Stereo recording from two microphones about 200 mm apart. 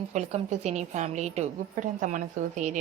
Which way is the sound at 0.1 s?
35° right (ahead or behind).